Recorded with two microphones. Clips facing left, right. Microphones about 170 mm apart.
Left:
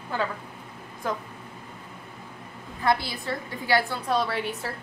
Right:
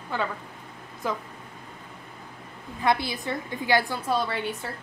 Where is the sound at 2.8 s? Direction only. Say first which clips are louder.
Even; 20° right (ahead or behind).